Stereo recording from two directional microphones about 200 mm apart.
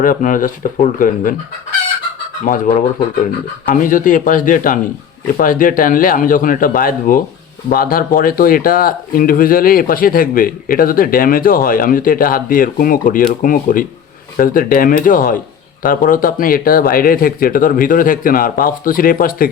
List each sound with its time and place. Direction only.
0.0 s speech: 40° left (ahead or behind)
2.4 s speech: 40° left (ahead or behind)